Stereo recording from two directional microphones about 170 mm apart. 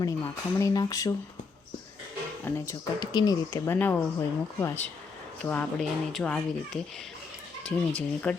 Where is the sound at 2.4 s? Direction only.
20° left (ahead or behind); by 6.4 s 5° left (ahead or behind).